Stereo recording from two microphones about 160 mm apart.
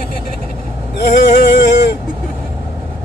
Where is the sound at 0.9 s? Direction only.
90° left.